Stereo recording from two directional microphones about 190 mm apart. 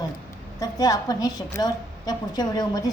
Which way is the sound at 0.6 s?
20° left (ahead or behind).